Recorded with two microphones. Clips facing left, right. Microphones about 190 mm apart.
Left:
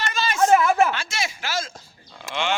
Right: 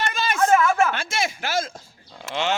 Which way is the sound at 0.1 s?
55° right (ahead or behind).